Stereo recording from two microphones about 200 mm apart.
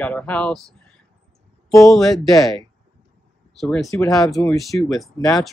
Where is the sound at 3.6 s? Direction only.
Centre (ahead or behind).